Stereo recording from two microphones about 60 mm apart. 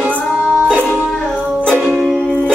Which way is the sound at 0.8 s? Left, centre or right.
Left.